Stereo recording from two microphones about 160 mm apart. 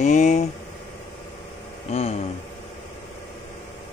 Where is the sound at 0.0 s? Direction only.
45° left (ahead or behind).